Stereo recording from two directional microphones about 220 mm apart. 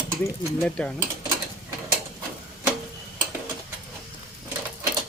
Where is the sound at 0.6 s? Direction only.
5° left (ahead or behind).